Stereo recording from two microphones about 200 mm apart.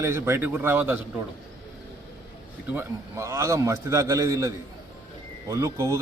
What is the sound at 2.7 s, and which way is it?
Speech, 15° right (ahead or behind).